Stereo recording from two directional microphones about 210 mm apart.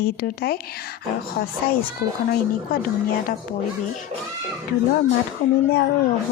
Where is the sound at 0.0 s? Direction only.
50° left (ahead or behind).